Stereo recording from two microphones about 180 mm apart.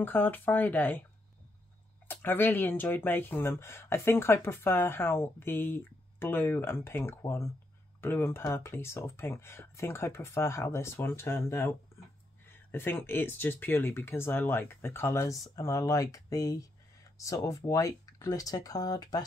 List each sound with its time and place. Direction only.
0.0 s speech: 10° left (ahead or behind)
2.0 s speech: 10° left (ahead or behind)